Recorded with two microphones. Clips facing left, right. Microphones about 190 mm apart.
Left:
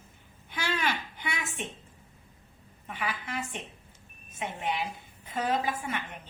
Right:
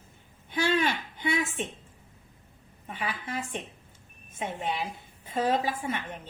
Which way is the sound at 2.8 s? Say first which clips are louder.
Right 1 dB; 30° right (ahead or behind).